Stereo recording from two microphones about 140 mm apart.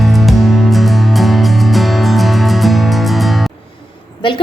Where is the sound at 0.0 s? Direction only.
Centre (ahead or behind).